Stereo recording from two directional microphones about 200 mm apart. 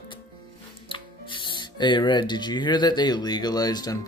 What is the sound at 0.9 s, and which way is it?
Speech, 25° left (ahead or behind).